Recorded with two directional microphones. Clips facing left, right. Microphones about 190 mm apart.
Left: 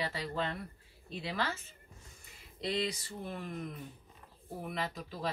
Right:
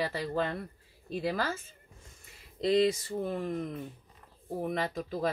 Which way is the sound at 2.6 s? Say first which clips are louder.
Right 10 dB; 50° right (ahead or behind).